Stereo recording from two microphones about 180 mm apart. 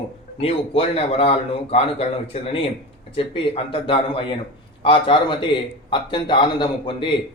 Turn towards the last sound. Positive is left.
turn(degrees=25)  # may be behind; listen again after turning